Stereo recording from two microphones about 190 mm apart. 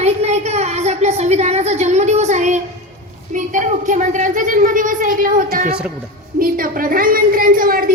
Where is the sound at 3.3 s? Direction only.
40° right (ahead or behind).